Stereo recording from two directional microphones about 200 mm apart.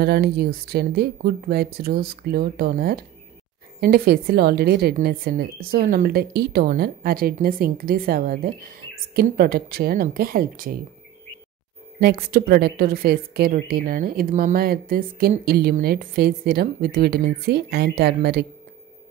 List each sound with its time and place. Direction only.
0.0 s a woman's voice: 55° right (ahead or behind)
12.0 s a woman's voice: 50° right (ahead or behind)